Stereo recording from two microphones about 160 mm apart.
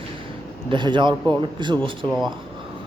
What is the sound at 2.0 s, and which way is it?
Speech, centre (ahead or behind).